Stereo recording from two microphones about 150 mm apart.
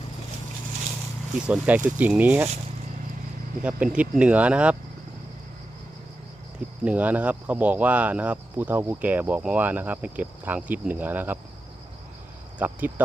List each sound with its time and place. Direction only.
1.5 s speech: 10° right (ahead or behind)
3.6 s speech: 10° right (ahead or behind)
6.8 s speech: 10° right (ahead or behind)
12.5 s speech: 10° right (ahead or behind)